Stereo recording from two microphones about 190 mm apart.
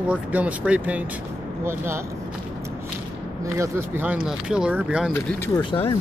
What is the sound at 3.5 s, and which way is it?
Speech, 15° right (ahead or behind).